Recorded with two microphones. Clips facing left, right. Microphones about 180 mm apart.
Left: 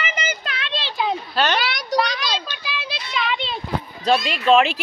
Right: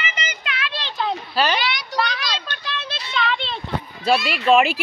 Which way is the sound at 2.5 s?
5° left (ahead or behind).